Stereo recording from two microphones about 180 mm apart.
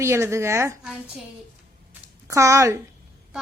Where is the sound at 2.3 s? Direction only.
15° right (ahead or behind).